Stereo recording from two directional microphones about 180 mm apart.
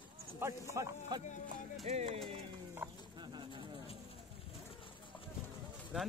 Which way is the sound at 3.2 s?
25° right (ahead or behind).